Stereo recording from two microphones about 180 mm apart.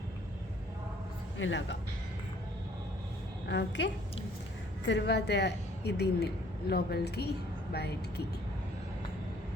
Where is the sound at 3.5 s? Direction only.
80° left.